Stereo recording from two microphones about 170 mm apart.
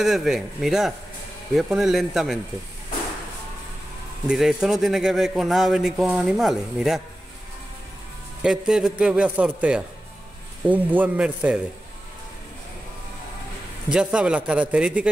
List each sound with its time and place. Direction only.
0.0 s a man's voice: centre (ahead or behind)
4.3 s a man's voice: 5° right (ahead or behind)
8.4 s a man's voice: 5° right (ahead or behind)
13.9 s a man's voice: 5° right (ahead or behind)